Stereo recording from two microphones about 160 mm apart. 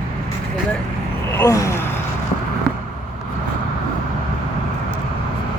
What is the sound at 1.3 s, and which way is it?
Gasp, 20° left (ahead or behind).